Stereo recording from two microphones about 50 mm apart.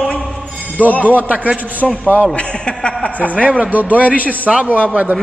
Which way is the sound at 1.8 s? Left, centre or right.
Left.